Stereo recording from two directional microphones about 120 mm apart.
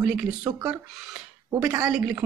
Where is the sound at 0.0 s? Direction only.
10° right (ahead or behind).